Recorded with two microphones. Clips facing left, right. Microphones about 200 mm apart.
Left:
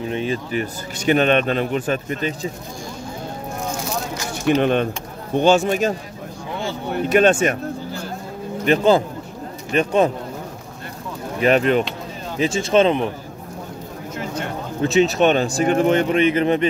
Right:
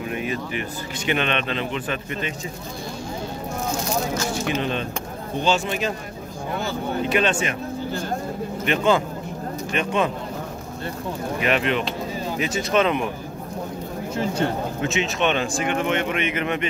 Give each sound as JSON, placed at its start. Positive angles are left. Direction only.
{"t": 0.1, "sound": "a man's voice", "side_deg": 30}
{"t": 4.6, "sound": "a man's voice", "side_deg": 55}
{"t": 7.1, "sound": "a man's voice", "side_deg": 50}
{"t": 8.6, "sound": "a man's voice", "side_deg": 35}
{"t": 11.4, "sound": "a man's voice", "side_deg": 40}
{"t": 12.4, "sound": "speech", "side_deg": 30}
{"t": 14.1, "sound": "speech", "side_deg": -30}
{"t": 14.8, "sound": "a man's voice", "side_deg": 35}